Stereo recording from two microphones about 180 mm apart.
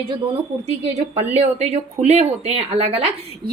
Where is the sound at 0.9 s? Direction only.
35° right (ahead or behind).